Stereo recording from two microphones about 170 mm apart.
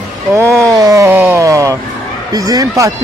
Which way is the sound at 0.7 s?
20° right (ahead or behind).